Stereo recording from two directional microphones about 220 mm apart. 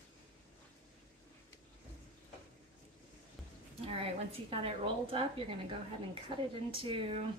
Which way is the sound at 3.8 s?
25° right (ahead or behind).